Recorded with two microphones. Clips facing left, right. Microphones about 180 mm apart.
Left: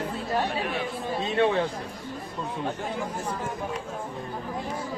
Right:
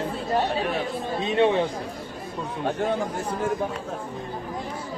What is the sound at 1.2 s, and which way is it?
Speech, 20° right (ahead or behind).